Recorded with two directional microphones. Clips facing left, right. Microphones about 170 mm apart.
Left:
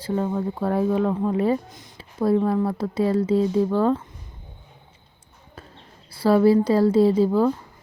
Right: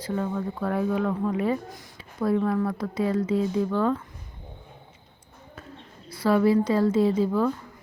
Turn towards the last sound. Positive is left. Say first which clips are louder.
# left 4 dB
turn(degrees=30)  # may be behind; listen again after turning